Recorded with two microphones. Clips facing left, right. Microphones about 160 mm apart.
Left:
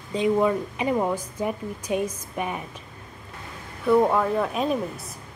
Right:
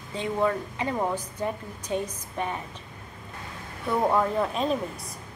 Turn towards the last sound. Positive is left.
turn(degrees=0)  # may be behind; listen again after turning